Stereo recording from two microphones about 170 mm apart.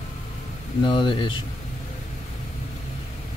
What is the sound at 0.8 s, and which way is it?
Speech, 30° left (ahead or behind).